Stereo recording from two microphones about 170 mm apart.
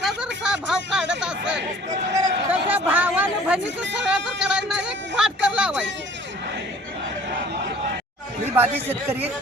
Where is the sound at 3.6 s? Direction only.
90° right.